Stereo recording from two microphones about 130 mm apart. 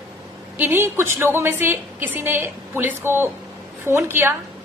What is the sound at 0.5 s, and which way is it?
A woman's voice, 15° right (ahead or behind).